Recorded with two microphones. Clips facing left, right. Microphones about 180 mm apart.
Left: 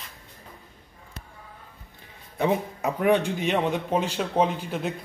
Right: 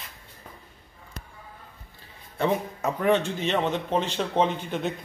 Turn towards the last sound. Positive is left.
turn(degrees=5)  # may be behind; listen again after turning